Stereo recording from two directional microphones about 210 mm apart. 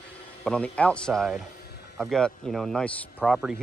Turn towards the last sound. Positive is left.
turn(degrees=0)  # may be behind; listen again after turning